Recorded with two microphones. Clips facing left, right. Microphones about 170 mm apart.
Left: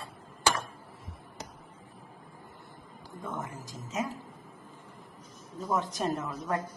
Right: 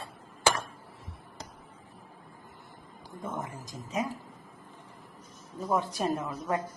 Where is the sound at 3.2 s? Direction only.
20° right (ahead or behind).